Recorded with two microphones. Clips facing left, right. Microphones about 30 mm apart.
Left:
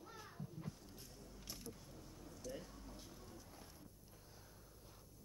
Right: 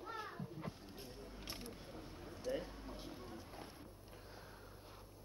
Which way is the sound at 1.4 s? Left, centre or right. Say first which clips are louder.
Right 3 dB; right.